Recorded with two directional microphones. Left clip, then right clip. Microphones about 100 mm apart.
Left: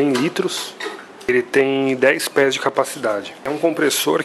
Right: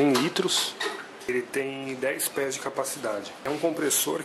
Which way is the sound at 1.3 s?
25° left (ahead or behind).